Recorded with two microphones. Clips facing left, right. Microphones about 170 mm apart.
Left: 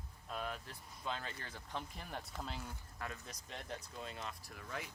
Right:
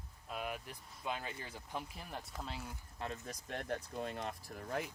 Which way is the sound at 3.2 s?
55° right (ahead or behind).